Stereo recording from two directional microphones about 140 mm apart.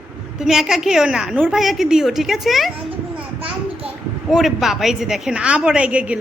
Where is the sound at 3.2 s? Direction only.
10° right (ahead or behind).